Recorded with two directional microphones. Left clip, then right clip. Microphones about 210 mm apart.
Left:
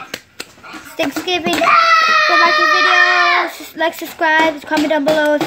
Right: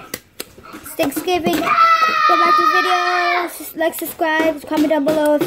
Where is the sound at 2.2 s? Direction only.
45° left (ahead or behind).